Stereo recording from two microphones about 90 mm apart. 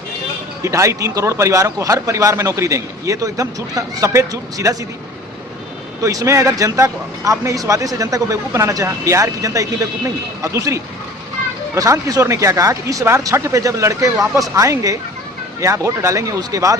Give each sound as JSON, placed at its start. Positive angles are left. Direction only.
{"t": 0.6, "sound": "speech", "side_deg": -35}
{"t": 6.0, "sound": "speech", "side_deg": -40}